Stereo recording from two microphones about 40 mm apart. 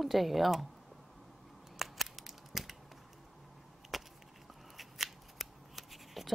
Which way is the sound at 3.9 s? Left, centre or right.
Centre.